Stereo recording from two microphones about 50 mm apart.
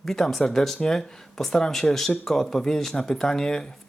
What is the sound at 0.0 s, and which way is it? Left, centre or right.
Speech, centre.